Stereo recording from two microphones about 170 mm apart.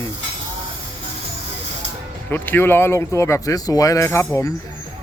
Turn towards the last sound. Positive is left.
turn(degrees=15)  # may be behind; listen again after turning